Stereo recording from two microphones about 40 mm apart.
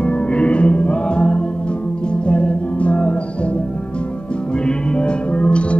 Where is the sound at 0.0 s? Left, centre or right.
Left.